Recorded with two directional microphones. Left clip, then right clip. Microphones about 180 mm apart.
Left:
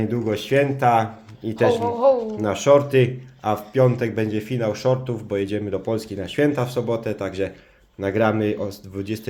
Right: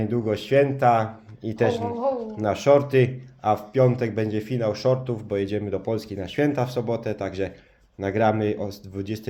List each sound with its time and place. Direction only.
0.0 s speech: 5° right (ahead or behind)
2.0 s speech: 60° left (ahead or behind)
2.4 s speech: 10° right (ahead or behind)